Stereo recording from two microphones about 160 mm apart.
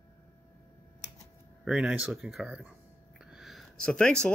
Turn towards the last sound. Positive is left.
turn(degrees=5)  # may be behind; listen again after turning